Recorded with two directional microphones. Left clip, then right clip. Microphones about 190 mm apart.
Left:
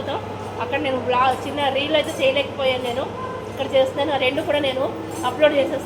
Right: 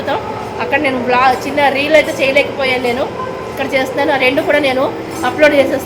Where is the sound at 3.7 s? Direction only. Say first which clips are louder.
Right 5 dB; 20° right (ahead or behind).